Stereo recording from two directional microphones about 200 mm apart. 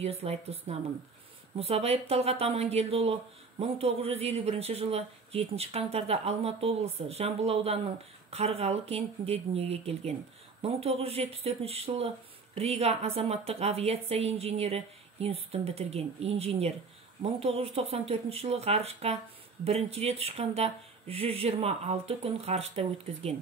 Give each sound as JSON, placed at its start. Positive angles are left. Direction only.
{"t": 0.0, "sound": "speech", "side_deg": -30}